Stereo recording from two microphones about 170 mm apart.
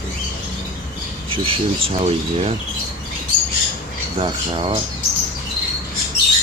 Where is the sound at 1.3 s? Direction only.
30° right (ahead or behind).